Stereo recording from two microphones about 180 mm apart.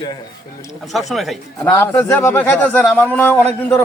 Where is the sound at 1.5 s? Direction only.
15° left (ahead or behind).